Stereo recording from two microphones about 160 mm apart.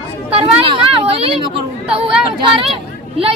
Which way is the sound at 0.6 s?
35° right (ahead or behind).